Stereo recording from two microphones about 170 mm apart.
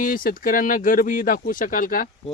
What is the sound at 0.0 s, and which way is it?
Speech, 55° left (ahead or behind).